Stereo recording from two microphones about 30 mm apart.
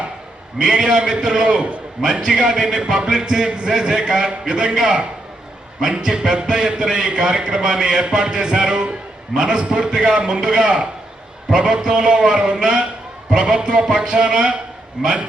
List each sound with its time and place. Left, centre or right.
0.6 s speech: right
6.1 s speech: right
10.4 s speech: centre
11.4 s speech: right